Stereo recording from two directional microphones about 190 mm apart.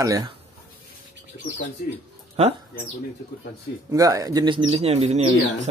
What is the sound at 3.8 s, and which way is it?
Speech, 15° right (ahead or behind).